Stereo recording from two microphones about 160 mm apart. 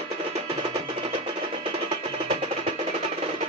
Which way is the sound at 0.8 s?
35° right (ahead or behind).